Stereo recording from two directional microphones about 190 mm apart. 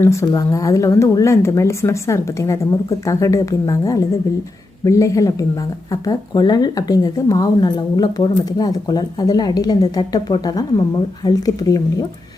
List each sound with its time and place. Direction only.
0.0 s a woman's voice: 15° left (ahead or behind)